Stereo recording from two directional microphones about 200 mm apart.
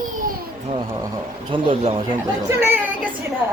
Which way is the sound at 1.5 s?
25° right (ahead or behind).